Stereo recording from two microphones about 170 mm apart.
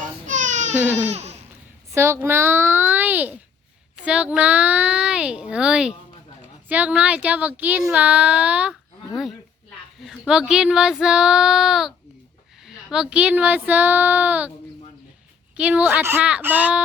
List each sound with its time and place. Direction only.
0.3 s baby cry: 45° right (ahead or behind)
1.9 s speech: 15° right (ahead or behind)
10.0 s child singing: centre (ahead or behind)
12.6 s speech: 5° right (ahead or behind)
15.5 s speech: 5° right (ahead or behind)